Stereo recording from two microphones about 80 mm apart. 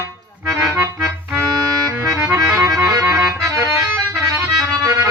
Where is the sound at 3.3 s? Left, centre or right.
Right.